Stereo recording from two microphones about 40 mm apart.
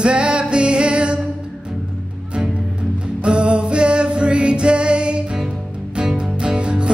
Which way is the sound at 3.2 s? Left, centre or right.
Right.